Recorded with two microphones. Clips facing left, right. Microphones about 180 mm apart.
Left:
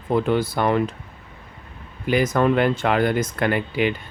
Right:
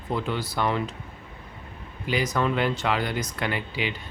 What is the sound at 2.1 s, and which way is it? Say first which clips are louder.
Speech: left 7 dB; 50° left (ahead or behind).